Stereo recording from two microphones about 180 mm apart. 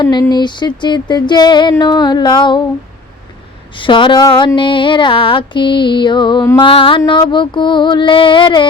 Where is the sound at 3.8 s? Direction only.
25° left (ahead or behind).